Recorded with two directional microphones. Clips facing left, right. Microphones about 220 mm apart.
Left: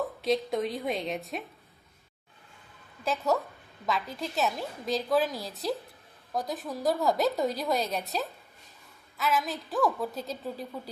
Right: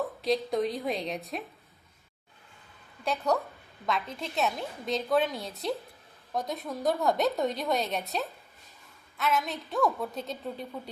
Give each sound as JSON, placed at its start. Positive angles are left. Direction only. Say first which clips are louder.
{"t": 0.2, "sound": "a woman's voice", "louder": "even", "side_deg": 0}
{"t": 3.0, "sound": "a woman's voice", "louder": "even", "side_deg": 0}